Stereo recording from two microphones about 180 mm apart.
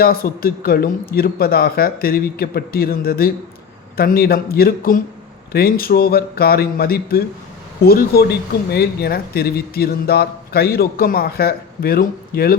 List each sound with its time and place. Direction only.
0.0 s speech: 55° left (ahead or behind)